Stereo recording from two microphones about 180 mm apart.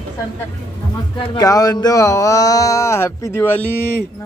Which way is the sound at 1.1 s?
25° left (ahead or behind).